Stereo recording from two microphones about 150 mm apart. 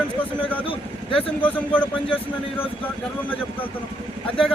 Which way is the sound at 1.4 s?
10° left (ahead or behind).